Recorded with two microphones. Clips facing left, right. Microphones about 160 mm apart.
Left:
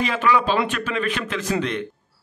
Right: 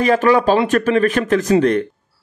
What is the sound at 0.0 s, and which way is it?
A man's voice, 45° right (ahead or behind).